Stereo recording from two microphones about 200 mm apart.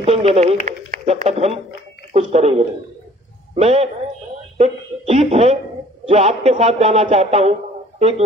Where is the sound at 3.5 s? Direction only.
30° right (ahead or behind).